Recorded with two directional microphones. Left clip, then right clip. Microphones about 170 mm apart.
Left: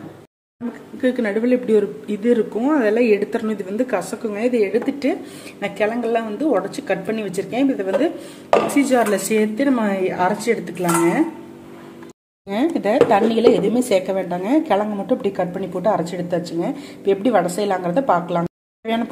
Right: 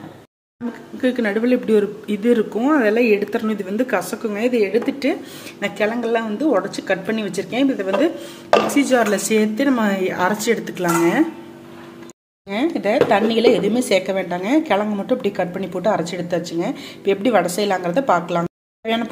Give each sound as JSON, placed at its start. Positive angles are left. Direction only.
{"t": 1.0, "sound": "speech", "side_deg": 5}
{"t": 12.4, "sound": "speech", "side_deg": 15}